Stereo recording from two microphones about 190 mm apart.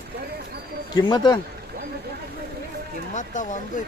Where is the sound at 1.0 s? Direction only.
20° left (ahead or behind).